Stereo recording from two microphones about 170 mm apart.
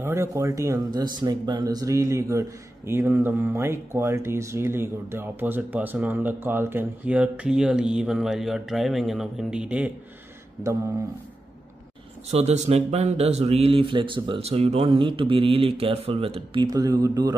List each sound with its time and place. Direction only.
0.0 s speech: 15° right (ahead or behind)
12.3 s speech: 40° right (ahead or behind); by 17.4 s 20° right (ahead or behind)